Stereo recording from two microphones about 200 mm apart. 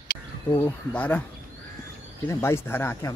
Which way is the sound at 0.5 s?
10° left (ahead or behind).